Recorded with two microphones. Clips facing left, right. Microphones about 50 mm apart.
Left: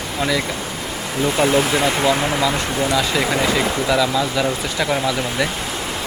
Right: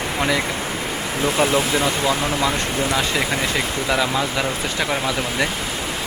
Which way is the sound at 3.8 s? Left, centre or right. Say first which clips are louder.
Left 1 dB; right.